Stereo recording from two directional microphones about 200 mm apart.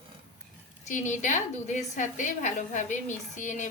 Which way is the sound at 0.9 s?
40° left (ahead or behind).